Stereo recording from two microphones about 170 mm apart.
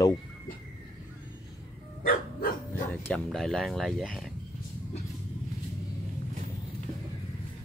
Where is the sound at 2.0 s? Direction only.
55° left (ahead or behind).